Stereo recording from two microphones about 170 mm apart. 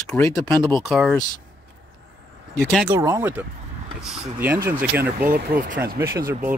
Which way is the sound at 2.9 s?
15° right (ahead or behind).